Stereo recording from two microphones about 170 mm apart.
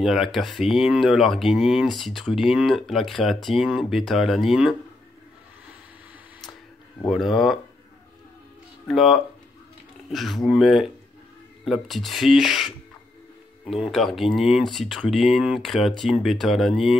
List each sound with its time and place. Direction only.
0.0 s speech: centre (ahead or behind)
7.1 s speech: centre (ahead or behind)
8.8 s speech: centre (ahead or behind)